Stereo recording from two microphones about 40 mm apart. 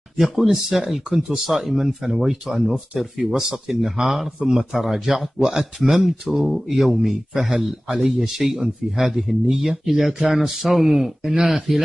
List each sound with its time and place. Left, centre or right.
0.2 s speech: centre